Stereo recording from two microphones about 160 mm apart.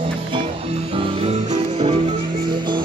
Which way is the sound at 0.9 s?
40° right (ahead or behind).